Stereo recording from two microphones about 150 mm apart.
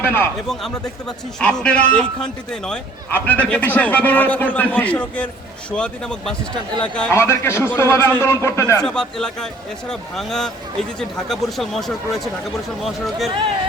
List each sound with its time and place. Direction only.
0.0 s speech: 15° left (ahead or behind)
0.4 s a man's voice: 5° left (ahead or behind)
7.1 s a man's voice: 15° left (ahead or behind)
8.8 s speech: 5° left (ahead or behind)